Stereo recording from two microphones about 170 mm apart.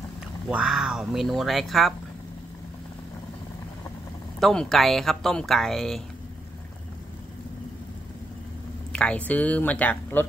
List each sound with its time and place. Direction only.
0.5 s speech: 5° right (ahead or behind)
4.4 s speech: centre (ahead or behind)
8.9 s speech: 5° left (ahead or behind)